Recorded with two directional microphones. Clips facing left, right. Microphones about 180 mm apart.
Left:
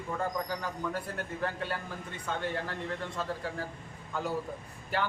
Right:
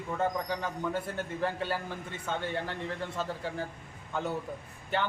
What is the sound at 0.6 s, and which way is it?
A man's voice, 25° right (ahead or behind).